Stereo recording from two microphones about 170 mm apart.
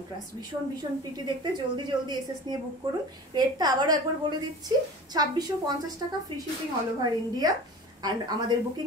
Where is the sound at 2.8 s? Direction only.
20° right (ahead or behind).